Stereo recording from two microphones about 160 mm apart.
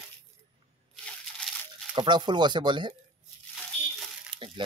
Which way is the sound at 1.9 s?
30° right (ahead or behind).